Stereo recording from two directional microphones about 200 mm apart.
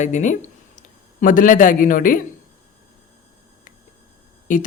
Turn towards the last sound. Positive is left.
turn(degrees=40)  # may be behind; listen again after turning